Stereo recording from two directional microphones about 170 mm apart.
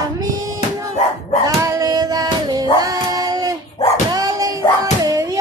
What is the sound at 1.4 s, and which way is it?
Child singing, 20° right (ahead or behind).